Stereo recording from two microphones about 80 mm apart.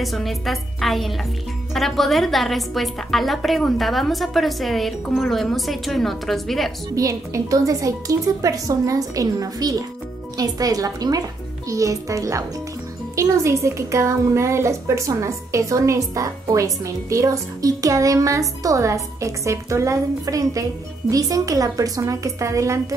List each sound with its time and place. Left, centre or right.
0.0 s a woman's voice: centre
7.0 s a woman's voice: right